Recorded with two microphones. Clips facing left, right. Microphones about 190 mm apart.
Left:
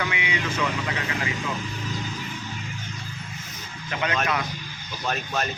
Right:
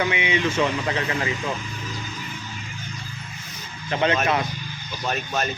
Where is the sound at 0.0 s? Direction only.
25° right (ahead or behind).